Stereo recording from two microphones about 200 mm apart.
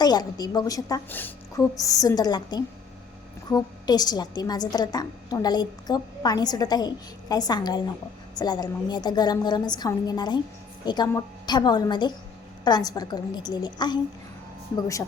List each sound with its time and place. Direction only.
0.0 s a woman's voice: 20° left (ahead or behind)